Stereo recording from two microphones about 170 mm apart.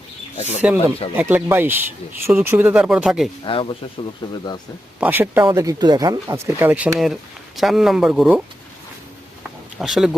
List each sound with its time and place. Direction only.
0.3 s speech: 40° left (ahead or behind)
1.1 s speech: 10° right (ahead or behind)
3.4 s speech: 30° left (ahead or behind)
4.9 s speech: 10° right (ahead or behind)
9.7 s speech: centre (ahead or behind)